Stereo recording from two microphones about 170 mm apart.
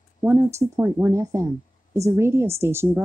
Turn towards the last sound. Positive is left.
turn(degrees=-15)  # may be behind; listen again after turning